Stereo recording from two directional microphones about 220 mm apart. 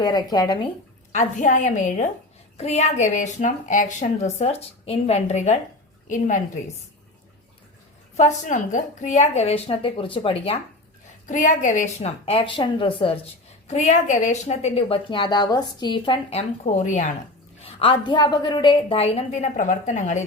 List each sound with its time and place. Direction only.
0.0 s a woman's voice: 20° left (ahead or behind)
1.1 s a woman's voice: 35° left (ahead or behind)
8.1 s a woman's voice: 30° left (ahead or behind)
16.7 s a woman's voice: 35° left (ahead or behind)
17.6 s a woman's voice: 25° left (ahead or behind)